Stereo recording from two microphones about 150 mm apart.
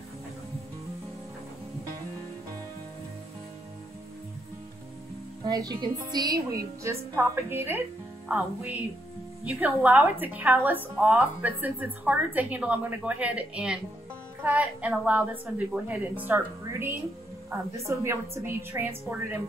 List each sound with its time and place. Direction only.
5.4 s a woman's voice: 25° right (ahead or behind)